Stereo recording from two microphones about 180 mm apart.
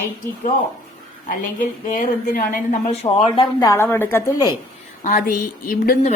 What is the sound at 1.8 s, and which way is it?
Speech, 50° left (ahead or behind).